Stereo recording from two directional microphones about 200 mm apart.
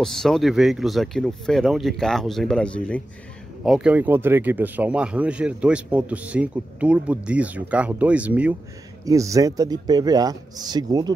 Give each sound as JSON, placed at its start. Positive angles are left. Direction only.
{"t": 0.0, "sound": "a man's voice", "side_deg": 0}